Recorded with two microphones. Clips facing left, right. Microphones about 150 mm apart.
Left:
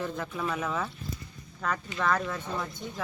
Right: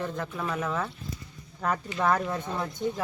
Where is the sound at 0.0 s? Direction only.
5° left (ahead or behind).